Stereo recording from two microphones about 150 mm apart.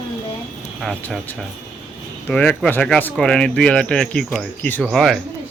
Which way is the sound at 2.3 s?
10° left (ahead or behind).